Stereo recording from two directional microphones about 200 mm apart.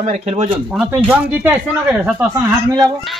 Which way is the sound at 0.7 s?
5° right (ahead or behind).